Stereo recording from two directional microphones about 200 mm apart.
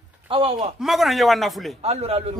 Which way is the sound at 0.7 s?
Centre (ahead or behind).